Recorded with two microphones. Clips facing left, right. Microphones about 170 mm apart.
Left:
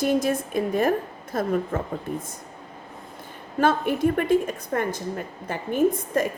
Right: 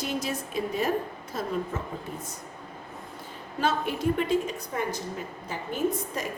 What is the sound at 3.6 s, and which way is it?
A woman's voice, 50° left (ahead or behind).